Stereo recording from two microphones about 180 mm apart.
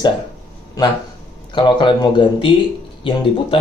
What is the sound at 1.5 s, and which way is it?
Speech, 25° left (ahead or behind).